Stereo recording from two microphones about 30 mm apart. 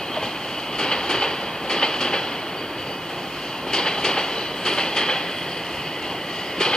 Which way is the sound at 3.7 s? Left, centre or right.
Left.